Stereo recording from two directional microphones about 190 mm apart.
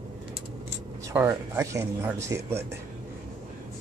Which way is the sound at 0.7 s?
15° right (ahead or behind).